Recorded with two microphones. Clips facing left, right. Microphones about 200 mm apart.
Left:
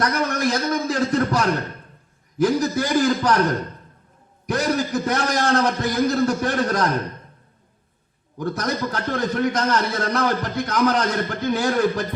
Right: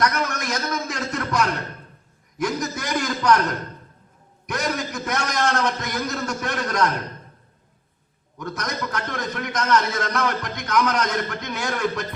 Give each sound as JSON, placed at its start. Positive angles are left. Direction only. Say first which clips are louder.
{"t": 0.0, "sound": "a man's voice", "louder": "left 3 dB", "side_deg": 35}
{"t": 4.4, "sound": "a man's voice", "louder": "left 5 dB", "side_deg": 35}
{"t": 8.4, "sound": "a man's voice", "louder": "left 5 dB", "side_deg": 35}